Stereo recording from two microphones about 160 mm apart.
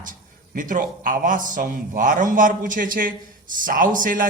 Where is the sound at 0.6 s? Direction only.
55° right (ahead or behind).